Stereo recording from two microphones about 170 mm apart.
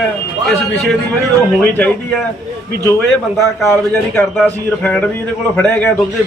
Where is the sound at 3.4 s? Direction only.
15° left (ahead or behind).